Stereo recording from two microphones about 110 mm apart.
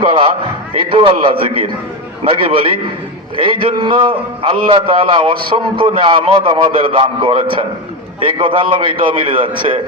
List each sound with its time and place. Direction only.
0.0 s a man's voice: 50° right (ahead or behind)